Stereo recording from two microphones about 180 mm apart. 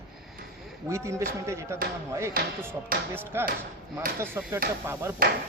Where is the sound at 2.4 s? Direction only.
55° right (ahead or behind).